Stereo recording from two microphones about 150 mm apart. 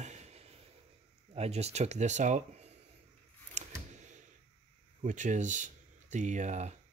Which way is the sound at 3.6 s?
55° right (ahead or behind).